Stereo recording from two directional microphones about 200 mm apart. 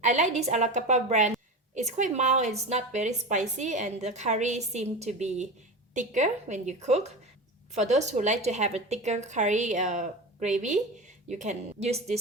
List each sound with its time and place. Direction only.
0.0 s a woman's voice: 35° right (ahead or behind)